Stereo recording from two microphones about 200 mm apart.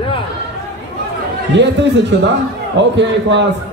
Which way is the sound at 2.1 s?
60° right (ahead or behind).